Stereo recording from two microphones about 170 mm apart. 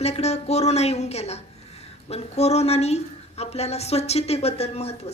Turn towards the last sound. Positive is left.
turn(degrees=35)  # may be behind; listen again after turning